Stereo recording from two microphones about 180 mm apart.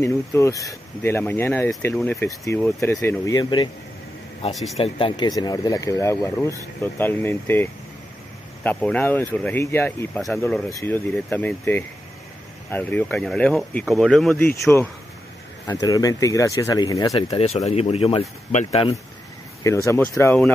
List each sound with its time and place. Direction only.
0.0 s speech: 15° left (ahead or behind)
4.7 s speech: 30° left (ahead or behind); by 10.6 s 5° left (ahead or behind)
10.7 s speech: 15° left (ahead or behind)
15.6 s speech: 20° left (ahead or behind)
17.4 s speech: 35° left (ahead or behind)
19.6 s speech: 15° left (ahead or behind)